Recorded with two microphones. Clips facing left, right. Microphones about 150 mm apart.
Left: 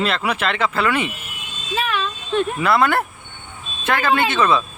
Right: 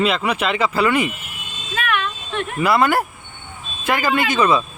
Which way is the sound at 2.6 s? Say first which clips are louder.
Right 4 dB; 5° right (ahead or behind).